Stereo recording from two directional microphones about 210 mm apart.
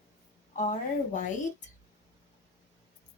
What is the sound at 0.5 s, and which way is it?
Speech, 35° left (ahead or behind).